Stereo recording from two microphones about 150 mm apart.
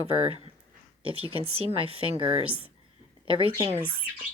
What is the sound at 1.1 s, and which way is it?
Speech, 40° right (ahead or behind).